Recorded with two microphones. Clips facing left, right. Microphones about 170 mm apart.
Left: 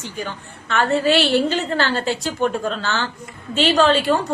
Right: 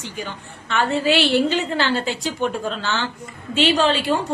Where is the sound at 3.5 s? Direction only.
45° left (ahead or behind).